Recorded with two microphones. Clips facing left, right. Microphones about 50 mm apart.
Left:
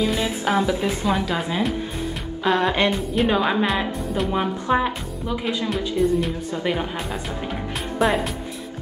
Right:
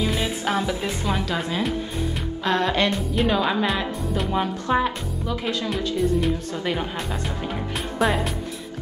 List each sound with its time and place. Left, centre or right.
0.0 s speech: centre
2.4 s speech: centre
3.6 s speech: centre
5.7 s speech: centre